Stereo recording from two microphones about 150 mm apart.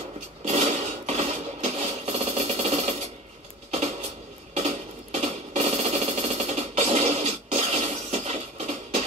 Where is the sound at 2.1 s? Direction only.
45° right (ahead or behind).